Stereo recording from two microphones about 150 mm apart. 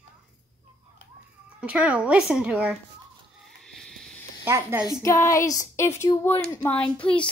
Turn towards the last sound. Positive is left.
turn(degrees=10)  # may be behind; listen again after turning